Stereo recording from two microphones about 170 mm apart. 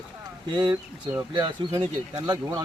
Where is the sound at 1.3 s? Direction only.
25° right (ahead or behind).